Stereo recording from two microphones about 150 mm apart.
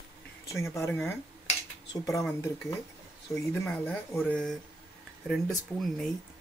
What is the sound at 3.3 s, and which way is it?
Speech, 20° left (ahead or behind).